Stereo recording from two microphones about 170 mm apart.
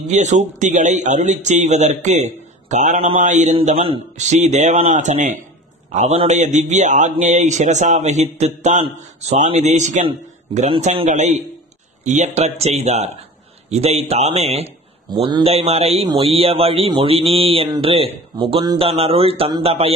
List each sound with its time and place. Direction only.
0.1 s a man's voice: 45° right (ahead or behind)